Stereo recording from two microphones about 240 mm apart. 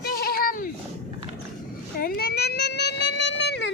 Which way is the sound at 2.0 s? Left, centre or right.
Left.